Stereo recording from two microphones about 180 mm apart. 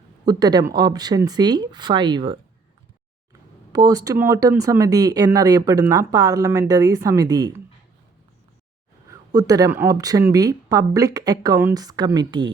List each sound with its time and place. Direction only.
0.3 s speech: 20° right (ahead or behind)
3.7 s speech: 20° right (ahead or behind)
9.0 s speech: 20° right (ahead or behind)